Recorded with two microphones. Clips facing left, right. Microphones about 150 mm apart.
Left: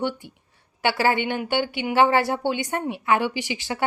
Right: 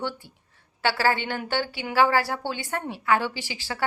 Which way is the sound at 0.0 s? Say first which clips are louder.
Left 5 dB; 15° left (ahead or behind).